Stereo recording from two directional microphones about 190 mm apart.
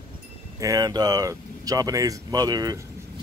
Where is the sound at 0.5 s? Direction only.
20° right (ahead or behind).